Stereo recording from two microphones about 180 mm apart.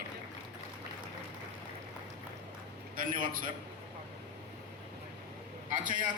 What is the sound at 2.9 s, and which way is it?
Speech, 50° right (ahead or behind).